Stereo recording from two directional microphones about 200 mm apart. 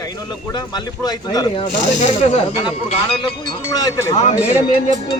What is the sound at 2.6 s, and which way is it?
Speech, 30° left (ahead or behind).